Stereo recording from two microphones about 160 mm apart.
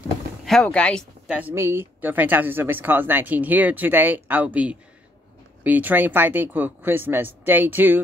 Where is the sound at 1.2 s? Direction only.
10° right (ahead or behind).